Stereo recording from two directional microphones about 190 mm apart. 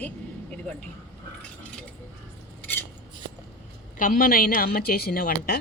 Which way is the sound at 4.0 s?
45° left (ahead or behind).